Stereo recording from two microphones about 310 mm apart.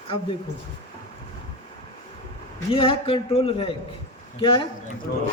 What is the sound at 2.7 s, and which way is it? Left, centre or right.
A man's voice, centre.